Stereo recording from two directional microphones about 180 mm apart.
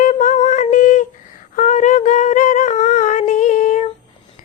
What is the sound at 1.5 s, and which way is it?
Humming, 45° left (ahead or behind).